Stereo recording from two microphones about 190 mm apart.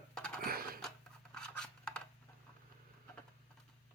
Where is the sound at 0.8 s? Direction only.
5° left (ahead or behind).